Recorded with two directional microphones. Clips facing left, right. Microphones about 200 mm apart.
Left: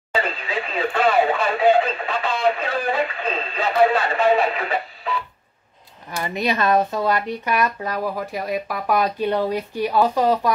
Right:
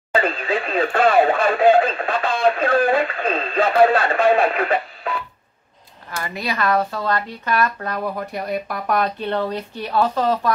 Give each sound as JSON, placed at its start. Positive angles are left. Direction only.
{"t": 0.1, "sound": "radio", "side_deg": -50}
{"t": 6.2, "sound": "speech", "side_deg": 20}